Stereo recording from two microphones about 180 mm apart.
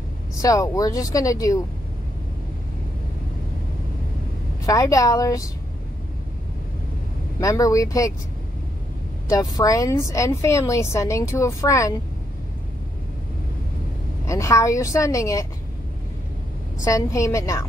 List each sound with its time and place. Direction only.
0.4 s speech: 20° left (ahead or behind)
4.6 s speech: 20° left (ahead or behind)
7.3 s speech: 20° left (ahead or behind)
9.3 s a woman's voice: 20° left (ahead or behind)
14.2 s a woman's voice: 15° left (ahead or behind)
16.8 s a woman's voice: 15° left (ahead or behind)